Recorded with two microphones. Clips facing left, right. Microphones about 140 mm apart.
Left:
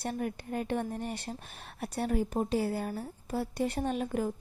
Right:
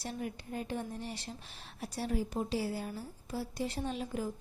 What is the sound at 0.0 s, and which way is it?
A woman's voice, 55° left (ahead or behind).